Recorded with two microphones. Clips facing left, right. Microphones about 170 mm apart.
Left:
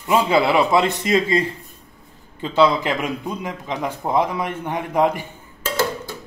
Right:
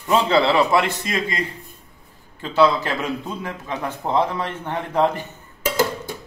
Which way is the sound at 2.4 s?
15° left (ahead or behind).